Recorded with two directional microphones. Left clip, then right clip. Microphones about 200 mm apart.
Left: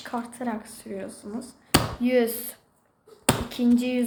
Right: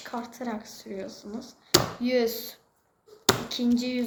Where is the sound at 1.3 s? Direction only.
5° left (ahead or behind).